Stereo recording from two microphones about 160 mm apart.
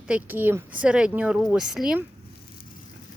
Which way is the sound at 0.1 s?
10° right (ahead or behind).